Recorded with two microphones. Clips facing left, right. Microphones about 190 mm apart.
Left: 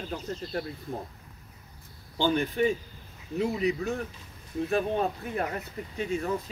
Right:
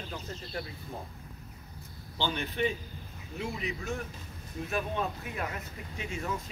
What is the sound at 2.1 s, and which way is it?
Speech, 45° left (ahead or behind).